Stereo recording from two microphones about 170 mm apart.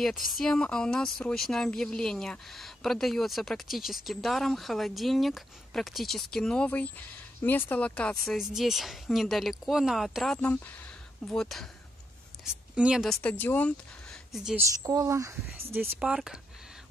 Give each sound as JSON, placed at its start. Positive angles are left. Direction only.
{"t": 0.3, "sound": "speech", "side_deg": 5}
{"t": 14.3, "sound": "a woman's voice", "side_deg": -5}
{"t": 14.6, "sound": "a woman's voice", "side_deg": -20}
{"t": 16.0, "sound": "speech", "side_deg": -5}